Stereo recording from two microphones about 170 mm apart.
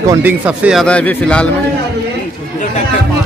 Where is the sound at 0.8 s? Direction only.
5° left (ahead or behind).